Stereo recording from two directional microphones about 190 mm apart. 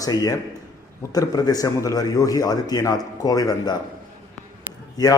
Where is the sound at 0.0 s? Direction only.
20° left (ahead or behind).